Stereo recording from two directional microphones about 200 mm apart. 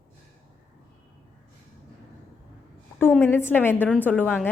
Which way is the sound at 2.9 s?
10° left (ahead or behind).